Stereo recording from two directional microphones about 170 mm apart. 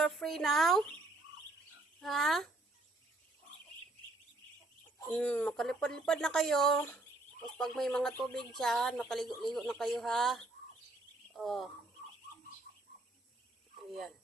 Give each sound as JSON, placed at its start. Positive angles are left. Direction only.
{"t": 0.0, "sound": "speech", "side_deg": 0}
{"t": 2.0, "sound": "speech", "side_deg": 0}
{"t": 5.1, "sound": "speech", "side_deg": 10}